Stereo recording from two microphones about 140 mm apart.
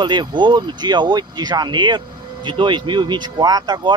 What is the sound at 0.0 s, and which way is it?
Speech, 35° right (ahead or behind).